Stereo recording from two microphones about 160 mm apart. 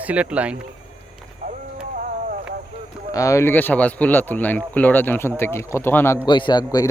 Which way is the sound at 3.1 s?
20° left (ahead or behind).